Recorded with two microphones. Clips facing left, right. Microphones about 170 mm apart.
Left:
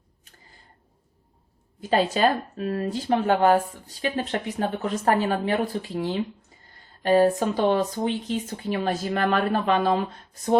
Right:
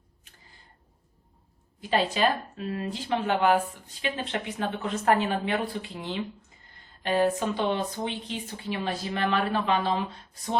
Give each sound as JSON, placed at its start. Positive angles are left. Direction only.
{"t": 1.8, "sound": "a woman's voice", "side_deg": 45}